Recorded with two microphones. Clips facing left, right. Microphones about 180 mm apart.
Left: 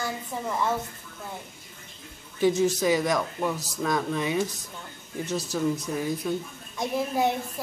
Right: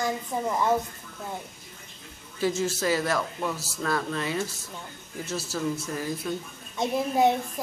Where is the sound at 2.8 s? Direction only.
15° left (ahead or behind).